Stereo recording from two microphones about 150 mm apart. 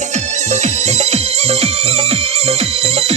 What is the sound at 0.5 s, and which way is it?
Music, 50° right (ahead or behind).